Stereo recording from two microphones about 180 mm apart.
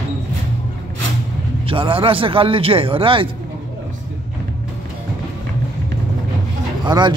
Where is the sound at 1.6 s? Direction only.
30° right (ahead or behind).